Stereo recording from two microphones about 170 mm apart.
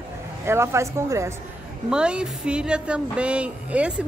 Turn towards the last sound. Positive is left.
turn(degrees=-5)  # may be behind; listen again after turning